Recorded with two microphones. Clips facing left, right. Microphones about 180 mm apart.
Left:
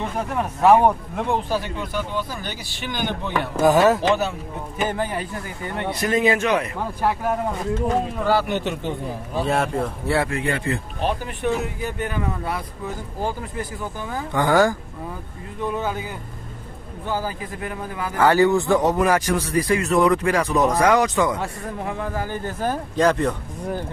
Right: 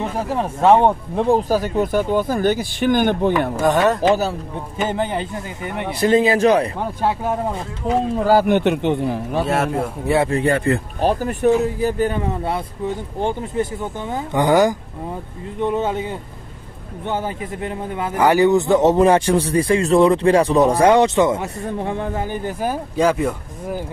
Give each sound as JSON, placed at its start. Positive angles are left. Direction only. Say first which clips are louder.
{"t": 0.0, "sound": "speech", "louder": "right 3 dB", "side_deg": -30}
{"t": 3.6, "sound": "speech", "louder": "left 1 dB", "side_deg": 0}
{"t": 4.1, "sound": "speech", "louder": "right 3 dB", "side_deg": -35}
{"t": 4.8, "sound": "a man's voice", "louder": "right 3 dB", "side_deg": -25}
{"t": 5.9, "sound": "speech", "louder": "right 5 dB", "side_deg": -30}
{"t": 6.8, "sound": "a man's voice", "louder": "right 2 dB", "side_deg": -25}
{"t": 8.2, "sound": "a man's voice", "louder": "right 6 dB", "side_deg": -45}
{"t": 9.4, "sound": "speech", "louder": "right 1 dB", "side_deg": -5}
{"t": 10.0, "sound": "a man's voice", "louder": "right 5 dB", "side_deg": -20}
{"t": 10.3, "sound": "a man's voice", "louder": "right 7 dB", "side_deg": -40}